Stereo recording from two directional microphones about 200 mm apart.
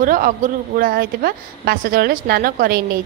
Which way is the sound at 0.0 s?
40° right (ahead or behind).